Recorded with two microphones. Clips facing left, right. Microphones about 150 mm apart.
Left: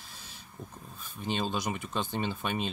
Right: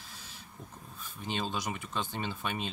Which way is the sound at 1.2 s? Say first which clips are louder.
Left 3 dB; 20° left (ahead or behind).